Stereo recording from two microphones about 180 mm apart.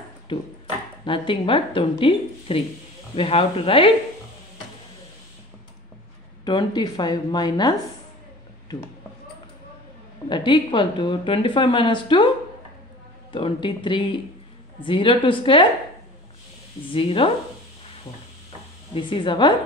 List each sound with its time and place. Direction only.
0.3 s speech: 25° left (ahead or behind)
6.4 s speech: 25° left (ahead or behind)
10.3 s speech: 25° left (ahead or behind)
13.3 s speech: 30° left (ahead or behind)
16.9 s speech: 30° left (ahead or behind)
18.9 s speech: 30° left (ahead or behind)